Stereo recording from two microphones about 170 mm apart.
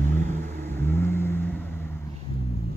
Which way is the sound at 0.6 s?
10° left (ahead or behind).